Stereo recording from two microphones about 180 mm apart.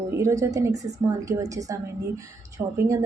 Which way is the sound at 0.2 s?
15° right (ahead or behind).